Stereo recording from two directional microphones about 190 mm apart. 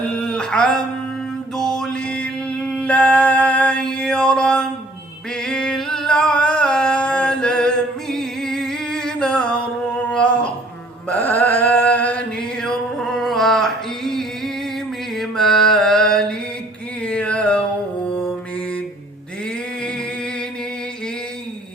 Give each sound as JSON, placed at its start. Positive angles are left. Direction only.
{"t": 0.1, "sound": "a sound", "side_deg": 5}
{"t": 1.5, "sound": "mantra", "side_deg": 5}
{"t": 5.4, "sound": "singing", "side_deg": 5}
{"t": 8.1, "sound": "music", "side_deg": 0}
{"t": 10.1, "sound": "a sound", "side_deg": 5}
{"t": 15.1, "sound": "mantra", "side_deg": 0}
{"t": 17.0, "sound": "music", "side_deg": 5}